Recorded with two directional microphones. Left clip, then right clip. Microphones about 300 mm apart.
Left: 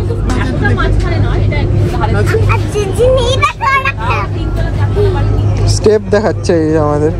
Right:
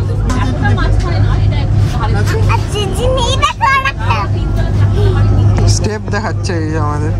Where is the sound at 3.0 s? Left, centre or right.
Centre.